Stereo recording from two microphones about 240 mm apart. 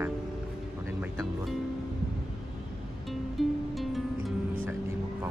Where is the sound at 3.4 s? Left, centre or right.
Centre.